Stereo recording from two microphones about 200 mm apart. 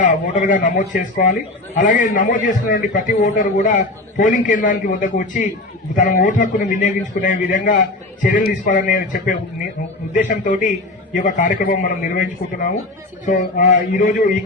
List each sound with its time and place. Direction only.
0.0 s a man's voice: 40° left (ahead or behind)